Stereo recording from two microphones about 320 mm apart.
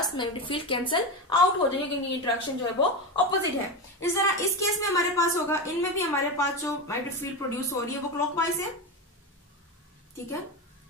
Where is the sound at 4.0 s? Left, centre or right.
Centre.